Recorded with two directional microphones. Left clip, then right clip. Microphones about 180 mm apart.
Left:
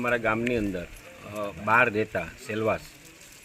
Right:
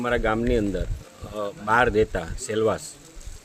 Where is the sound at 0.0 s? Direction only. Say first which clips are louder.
Right 2 dB; 20° right (ahead or behind).